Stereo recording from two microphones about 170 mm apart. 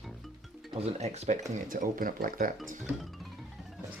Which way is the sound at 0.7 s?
40° right (ahead or behind).